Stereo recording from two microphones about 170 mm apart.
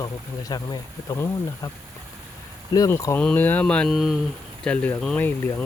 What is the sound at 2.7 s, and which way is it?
Speech, 20° left (ahead or behind).